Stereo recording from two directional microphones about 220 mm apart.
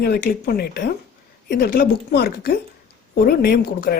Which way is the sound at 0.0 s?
45° left (ahead or behind).